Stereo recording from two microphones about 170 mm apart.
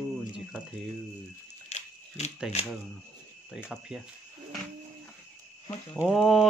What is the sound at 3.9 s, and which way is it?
Speech, 5° right (ahead or behind).